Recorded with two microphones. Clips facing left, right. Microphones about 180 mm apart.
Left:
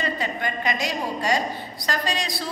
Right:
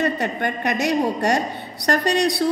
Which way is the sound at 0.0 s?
65° right (ahead or behind).